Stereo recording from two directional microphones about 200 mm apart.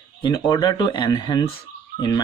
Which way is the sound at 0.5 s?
25° left (ahead or behind).